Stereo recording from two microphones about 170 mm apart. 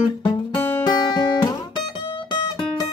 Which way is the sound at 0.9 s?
25° left (ahead or behind).